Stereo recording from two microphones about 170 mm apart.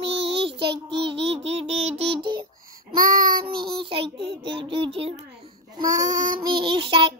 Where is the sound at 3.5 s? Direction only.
30° right (ahead or behind).